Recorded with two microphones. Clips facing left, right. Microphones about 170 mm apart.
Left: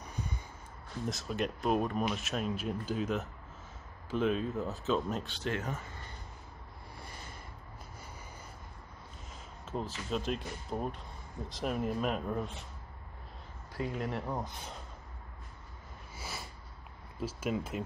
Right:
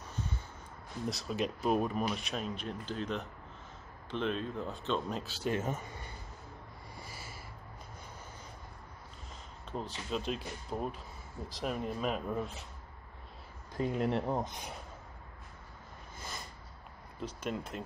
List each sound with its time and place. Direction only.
0.0 s a sound: 15° left (ahead or behind)
1.1 s speech: centre (ahead or behind)
5.5 s speech: 20° right (ahead or behind)
7.0 s snort: 5° right (ahead or behind)
9.7 s speech: centre (ahead or behind)
13.7 s speech: 25° right (ahead or behind)
16.2 s sniff: 5° left (ahead or behind)
17.2 s speech: 5° left (ahead or behind)